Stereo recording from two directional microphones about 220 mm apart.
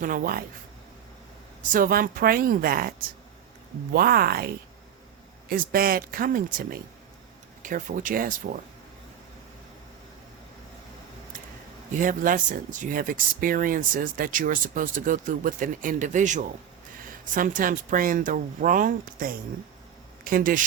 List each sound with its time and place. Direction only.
0.0 s speech: 40° right (ahead or behind)
1.7 s speech: 40° right (ahead or behind)
3.9 s speech: 45° right (ahead or behind)
11.9 s speech: 35° right (ahead or behind)